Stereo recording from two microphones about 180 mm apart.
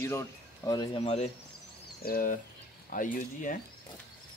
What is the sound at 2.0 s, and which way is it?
Speech, 55° left (ahead or behind).